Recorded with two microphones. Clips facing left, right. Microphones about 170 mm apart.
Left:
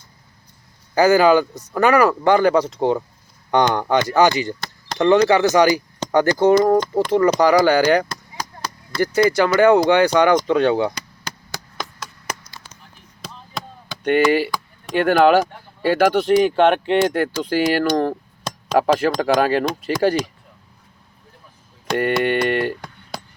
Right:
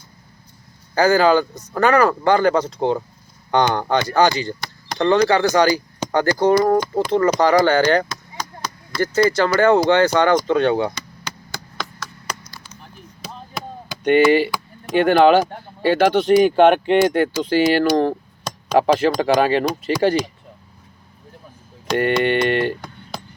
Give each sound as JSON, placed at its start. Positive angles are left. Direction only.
{"t": 0.9, "sound": "speech", "side_deg": 15}
{"t": 14.0, "sound": "speech", "side_deg": 0}
{"t": 16.3, "sound": "speech", "side_deg": -5}
{"t": 21.9, "sound": "speech", "side_deg": 5}